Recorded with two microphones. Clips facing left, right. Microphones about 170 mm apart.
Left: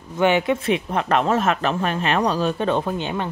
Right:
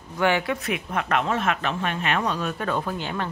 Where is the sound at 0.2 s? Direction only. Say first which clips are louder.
Left 5 dB; 20° left (ahead or behind).